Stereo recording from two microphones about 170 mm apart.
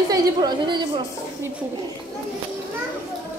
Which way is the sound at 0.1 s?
25° right (ahead or behind).